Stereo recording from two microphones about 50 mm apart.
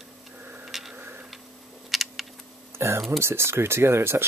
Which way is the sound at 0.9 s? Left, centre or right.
Right.